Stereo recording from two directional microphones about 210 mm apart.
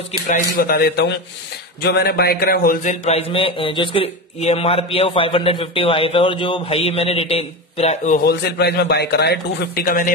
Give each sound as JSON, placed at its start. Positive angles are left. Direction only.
{"t": 0.3, "sound": "a man's voice", "side_deg": 45}
{"t": 8.3, "sound": "a man's voice", "side_deg": 50}